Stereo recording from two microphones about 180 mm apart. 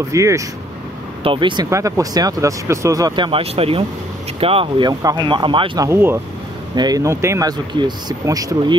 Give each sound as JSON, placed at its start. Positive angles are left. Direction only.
{"t": 0.1, "sound": "speech", "side_deg": -15}
{"t": 1.2, "sound": "speech", "side_deg": -30}
{"t": 5.9, "sound": "speech", "side_deg": -10}